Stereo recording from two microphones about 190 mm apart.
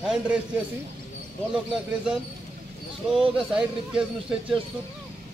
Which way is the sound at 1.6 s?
5° right (ahead or behind).